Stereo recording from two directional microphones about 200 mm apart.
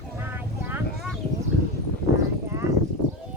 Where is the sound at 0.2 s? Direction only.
10° right (ahead or behind).